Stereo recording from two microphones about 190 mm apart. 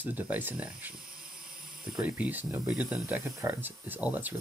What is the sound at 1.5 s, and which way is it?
Snake, 50° right (ahead or behind).